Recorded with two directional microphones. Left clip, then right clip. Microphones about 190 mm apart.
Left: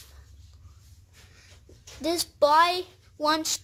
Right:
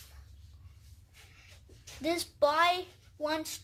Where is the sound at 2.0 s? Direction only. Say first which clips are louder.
Left 6 dB; 55° left (ahead or behind).